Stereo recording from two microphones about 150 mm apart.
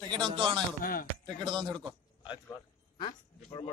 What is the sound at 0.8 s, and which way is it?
Speech, 70° left (ahead or behind).